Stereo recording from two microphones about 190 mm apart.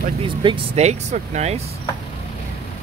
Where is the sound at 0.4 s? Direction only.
30° right (ahead or behind).